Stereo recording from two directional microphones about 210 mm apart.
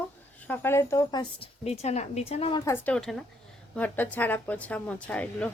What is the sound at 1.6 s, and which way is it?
Speech, 30° left (ahead or behind).